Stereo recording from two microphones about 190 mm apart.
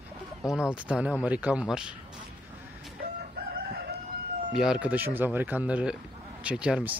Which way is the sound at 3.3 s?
55° right (ahead or behind).